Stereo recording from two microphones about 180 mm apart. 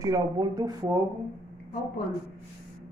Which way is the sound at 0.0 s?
20° right (ahead or behind).